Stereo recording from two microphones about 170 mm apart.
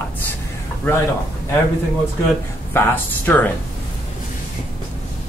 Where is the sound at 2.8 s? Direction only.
10° left (ahead or behind).